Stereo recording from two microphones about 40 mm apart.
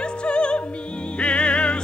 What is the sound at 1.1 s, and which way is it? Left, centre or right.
Music, left.